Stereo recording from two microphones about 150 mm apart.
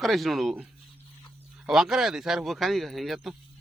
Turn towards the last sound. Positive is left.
turn(degrees=0)  # may be behind; listen again after turning